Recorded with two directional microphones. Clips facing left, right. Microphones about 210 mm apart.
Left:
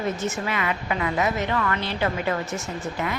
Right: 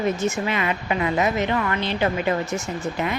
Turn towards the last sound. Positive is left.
turn(degrees=-15)  # may be behind; listen again after turning